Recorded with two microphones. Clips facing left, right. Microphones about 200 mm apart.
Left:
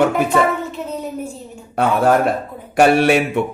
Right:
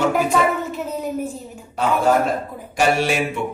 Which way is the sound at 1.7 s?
60° left (ahead or behind).